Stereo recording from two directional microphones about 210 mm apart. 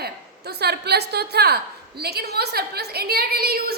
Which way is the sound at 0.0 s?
50° right (ahead or behind).